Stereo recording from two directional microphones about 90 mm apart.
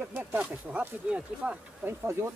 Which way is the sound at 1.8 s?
30° right (ahead or behind).